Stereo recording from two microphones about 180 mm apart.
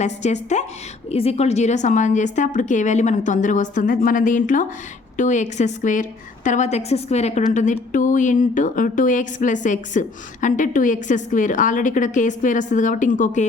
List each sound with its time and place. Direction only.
0.0 s a woman's voice: 40° left (ahead or behind)